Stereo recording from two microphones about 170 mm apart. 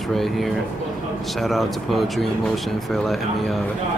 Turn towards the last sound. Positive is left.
turn(degrees=0)  # may be behind; listen again after turning